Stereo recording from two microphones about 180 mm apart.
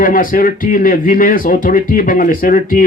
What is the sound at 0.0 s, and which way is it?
Speech, 50° left (ahead or behind).